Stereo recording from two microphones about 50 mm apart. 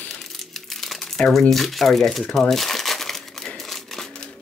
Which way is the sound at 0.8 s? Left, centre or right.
Centre.